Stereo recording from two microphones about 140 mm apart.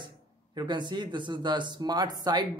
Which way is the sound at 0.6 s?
35° right (ahead or behind).